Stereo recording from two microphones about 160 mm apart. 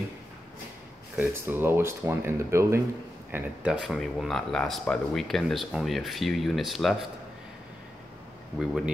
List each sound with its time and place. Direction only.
1.1 s speech: 15° right (ahead or behind)
8.5 s speech: centre (ahead or behind)